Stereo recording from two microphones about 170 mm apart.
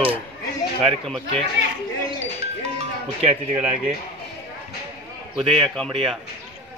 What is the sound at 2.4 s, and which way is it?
Speech, 40° right (ahead or behind).